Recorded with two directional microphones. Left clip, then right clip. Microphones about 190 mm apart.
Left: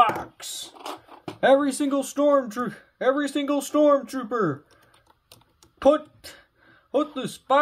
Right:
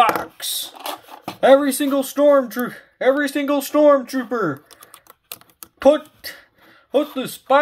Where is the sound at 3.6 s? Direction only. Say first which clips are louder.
Right 6 dB; 5° right (ahead or behind).